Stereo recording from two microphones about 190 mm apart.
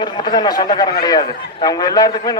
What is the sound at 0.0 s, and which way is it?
A man's voice, 20° left (ahead or behind).